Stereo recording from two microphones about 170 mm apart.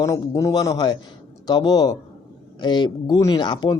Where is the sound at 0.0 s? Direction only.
20° left (ahead or behind).